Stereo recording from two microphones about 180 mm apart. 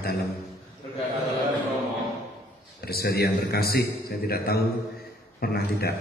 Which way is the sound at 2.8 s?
60° left (ahead or behind).